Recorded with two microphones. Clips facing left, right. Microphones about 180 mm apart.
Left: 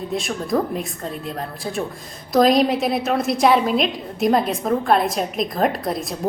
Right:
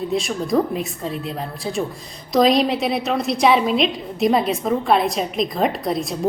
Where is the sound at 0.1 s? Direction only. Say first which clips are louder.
Right 1 dB; centre (ahead or behind).